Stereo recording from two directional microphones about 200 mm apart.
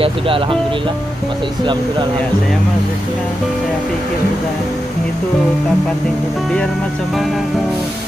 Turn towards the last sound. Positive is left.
turn(degrees=0)  # may be behind; listen again after turning